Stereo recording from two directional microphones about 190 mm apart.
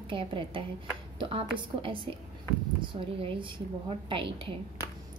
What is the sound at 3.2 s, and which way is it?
A woman's voice, 30° right (ahead or behind).